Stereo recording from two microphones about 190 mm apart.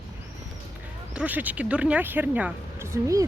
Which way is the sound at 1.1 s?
10° right (ahead or behind).